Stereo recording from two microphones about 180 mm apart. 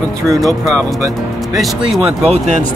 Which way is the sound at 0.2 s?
Centre (ahead or behind).